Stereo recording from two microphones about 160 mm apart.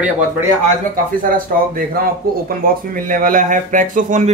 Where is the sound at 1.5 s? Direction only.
55° right (ahead or behind).